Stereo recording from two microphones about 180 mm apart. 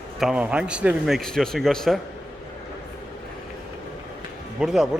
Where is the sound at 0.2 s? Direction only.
5° right (ahead or behind).